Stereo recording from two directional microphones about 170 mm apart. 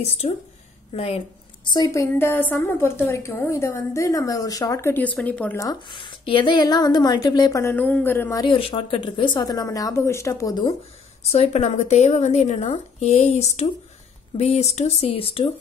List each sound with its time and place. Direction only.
0.2 s a woman's voice: 40° left (ahead or behind); by 5.7 s 10° left (ahead or behind)
5.7 s speech: 30° left (ahead or behind)
11.3 s a woman's voice: 40° left (ahead or behind)